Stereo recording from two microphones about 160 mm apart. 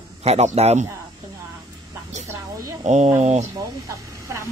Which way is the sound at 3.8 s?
20° right (ahead or behind).